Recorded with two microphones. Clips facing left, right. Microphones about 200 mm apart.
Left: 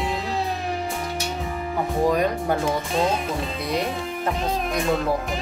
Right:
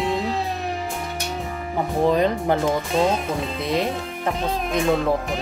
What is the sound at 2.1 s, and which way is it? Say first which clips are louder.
Speech: right 2 dB; 25° right (ahead or behind).